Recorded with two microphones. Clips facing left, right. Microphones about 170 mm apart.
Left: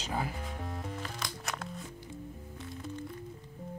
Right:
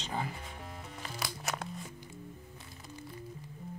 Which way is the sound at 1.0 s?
5° right (ahead or behind).